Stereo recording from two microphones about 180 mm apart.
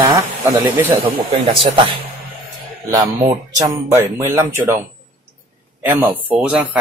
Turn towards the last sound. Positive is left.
turn(degrees=-5)  # may be behind; listen again after turning